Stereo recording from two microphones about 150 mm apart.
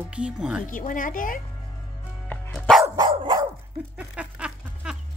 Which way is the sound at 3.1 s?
30° right (ahead or behind).